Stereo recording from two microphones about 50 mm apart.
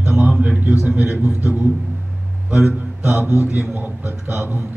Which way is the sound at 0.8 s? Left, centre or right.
Right.